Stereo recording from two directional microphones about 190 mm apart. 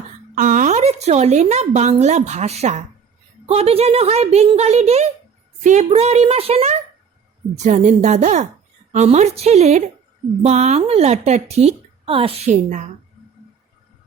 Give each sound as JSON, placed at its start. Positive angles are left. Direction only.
{"t": 0.3, "sound": "a woman's voice", "side_deg": -45}